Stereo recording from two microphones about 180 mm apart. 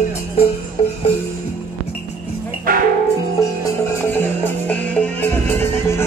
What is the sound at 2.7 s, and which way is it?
Music, 50° right (ahead or behind).